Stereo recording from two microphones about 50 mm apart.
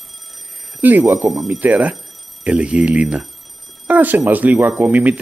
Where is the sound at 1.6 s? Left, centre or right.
Right.